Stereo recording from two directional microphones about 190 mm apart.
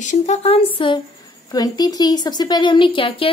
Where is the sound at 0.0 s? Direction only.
40° left (ahead or behind).